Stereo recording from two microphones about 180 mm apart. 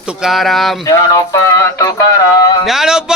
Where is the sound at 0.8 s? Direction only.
15° left (ahead or behind).